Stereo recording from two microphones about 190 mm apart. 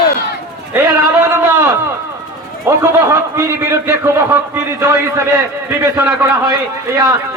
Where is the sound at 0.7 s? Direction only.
10° right (ahead or behind).